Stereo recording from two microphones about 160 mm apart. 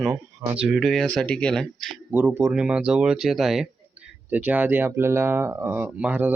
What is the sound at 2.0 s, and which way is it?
Speech, 10° right (ahead or behind).